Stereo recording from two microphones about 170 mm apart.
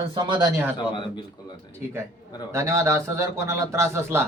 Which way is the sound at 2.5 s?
20° right (ahead or behind).